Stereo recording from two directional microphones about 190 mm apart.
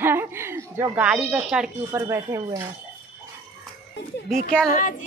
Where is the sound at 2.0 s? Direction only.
15° right (ahead or behind).